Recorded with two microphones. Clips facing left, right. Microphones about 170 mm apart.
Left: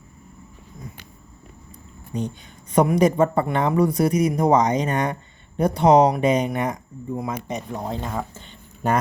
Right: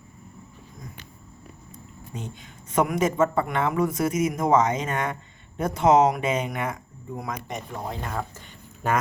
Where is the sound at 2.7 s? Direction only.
35° left (ahead or behind).